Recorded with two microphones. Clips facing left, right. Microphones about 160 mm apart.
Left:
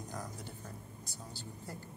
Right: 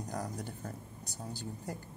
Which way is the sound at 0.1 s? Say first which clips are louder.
Right 7 dB; 45° right (ahead or behind).